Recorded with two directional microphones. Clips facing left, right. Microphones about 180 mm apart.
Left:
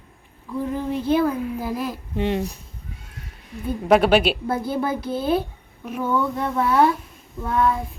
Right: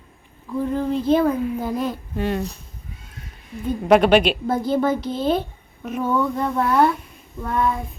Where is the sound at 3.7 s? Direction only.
5° left (ahead or behind).